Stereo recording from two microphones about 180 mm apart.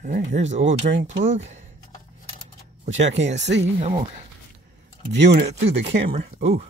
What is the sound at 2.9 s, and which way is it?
Speech, 40° right (ahead or behind).